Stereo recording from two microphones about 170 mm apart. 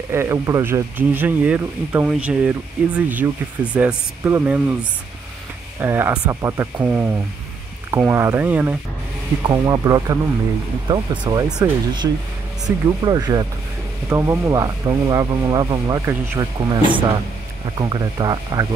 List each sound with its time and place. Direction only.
0.1 s speech: 15° right (ahead or behind)
5.8 s speech: 15° right (ahead or behind)